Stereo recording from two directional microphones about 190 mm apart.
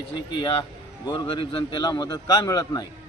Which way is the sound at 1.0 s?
25° left (ahead or behind).